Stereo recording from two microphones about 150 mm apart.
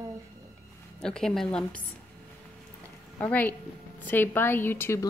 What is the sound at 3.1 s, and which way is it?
A woman's voice, 10° left (ahead or behind).